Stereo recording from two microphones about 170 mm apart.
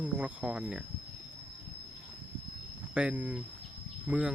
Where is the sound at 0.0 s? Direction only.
10° right (ahead or behind).